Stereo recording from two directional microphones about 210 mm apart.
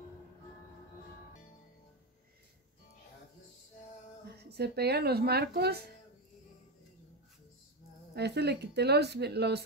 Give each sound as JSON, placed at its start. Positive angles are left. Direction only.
{"t": 4.4, "sound": "a woman's voice", "side_deg": -50}
{"t": 8.1, "sound": "a woman's voice", "side_deg": -50}